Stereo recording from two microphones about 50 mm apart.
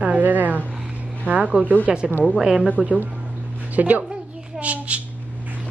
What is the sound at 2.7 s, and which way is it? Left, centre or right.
A woman's voice, right.